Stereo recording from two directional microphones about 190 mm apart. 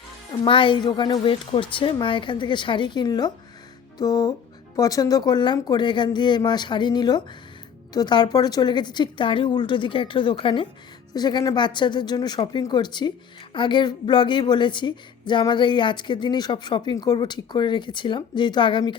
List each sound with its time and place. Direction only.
0.4 s speech: 25° left (ahead or behind)